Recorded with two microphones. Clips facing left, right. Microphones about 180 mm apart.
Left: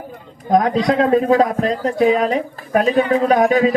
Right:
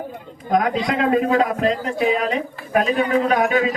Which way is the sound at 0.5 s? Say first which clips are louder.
Left 4 dB; 35° left (ahead or behind).